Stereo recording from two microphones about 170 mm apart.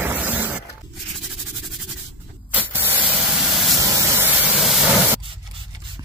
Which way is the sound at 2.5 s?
10° right (ahead or behind).